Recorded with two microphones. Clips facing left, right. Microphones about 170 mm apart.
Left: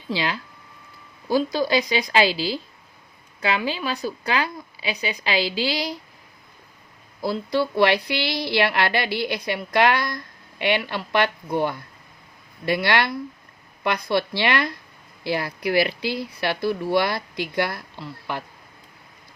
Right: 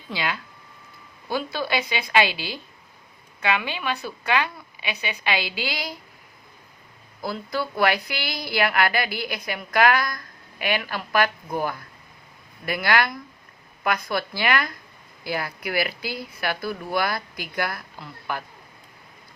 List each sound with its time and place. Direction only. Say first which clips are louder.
0.1 s a woman's voice: left 3 dB; 30° left (ahead or behind)
7.3 s a woman's voice: left 5 dB; 30° left (ahead or behind)